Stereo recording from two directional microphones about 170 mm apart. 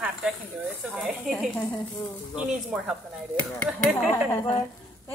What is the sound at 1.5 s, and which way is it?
Speech, 10° left (ahead or behind).